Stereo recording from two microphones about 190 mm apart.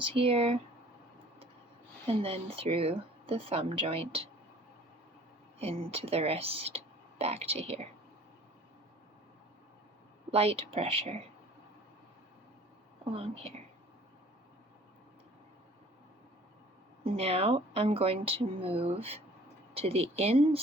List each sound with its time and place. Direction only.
0.0 s speech: 30° right (ahead or behind)
2.0 s speech: 30° right (ahead or behind)
5.5 s speech: 30° right (ahead or behind)
10.3 s speech: 30° right (ahead or behind)
13.1 s speech: 30° right (ahead or behind)
17.0 s speech: 30° right (ahead or behind)